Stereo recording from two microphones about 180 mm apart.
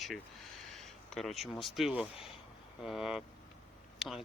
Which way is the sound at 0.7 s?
Centre (ahead or behind).